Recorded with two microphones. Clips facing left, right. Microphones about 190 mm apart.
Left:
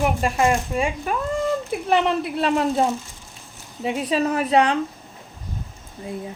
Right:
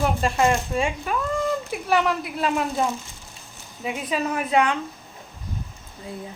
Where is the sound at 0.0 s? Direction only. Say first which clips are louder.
Left 1 dB; 10° left (ahead or behind).